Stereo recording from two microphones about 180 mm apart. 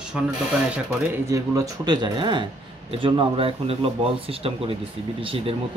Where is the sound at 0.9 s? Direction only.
15° right (ahead or behind).